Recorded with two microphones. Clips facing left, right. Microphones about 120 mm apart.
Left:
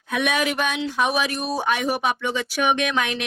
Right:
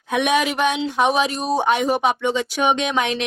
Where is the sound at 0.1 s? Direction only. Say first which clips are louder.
Right 4 dB; 20° right (ahead or behind).